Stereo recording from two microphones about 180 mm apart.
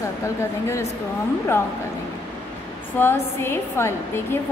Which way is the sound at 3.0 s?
10° left (ahead or behind).